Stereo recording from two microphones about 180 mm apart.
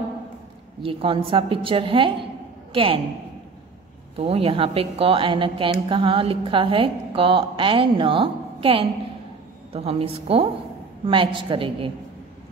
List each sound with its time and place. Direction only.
0.8 s a woman's voice: 30° right (ahead or behind)
4.2 s a woman's voice: 35° right (ahead or behind)